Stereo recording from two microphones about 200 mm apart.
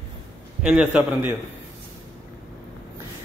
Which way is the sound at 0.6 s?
5° right (ahead or behind).